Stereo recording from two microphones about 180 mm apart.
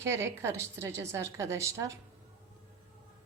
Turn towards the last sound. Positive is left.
turn(degrees=-15)  # may be behind; listen again after turning